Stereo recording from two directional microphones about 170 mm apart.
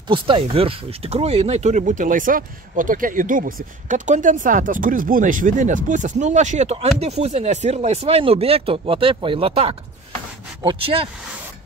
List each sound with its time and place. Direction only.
0.1 s speech: 30° right (ahead or behind)